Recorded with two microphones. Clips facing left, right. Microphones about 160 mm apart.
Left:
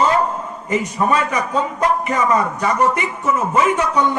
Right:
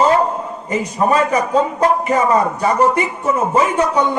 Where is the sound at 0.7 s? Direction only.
35° right (ahead or behind).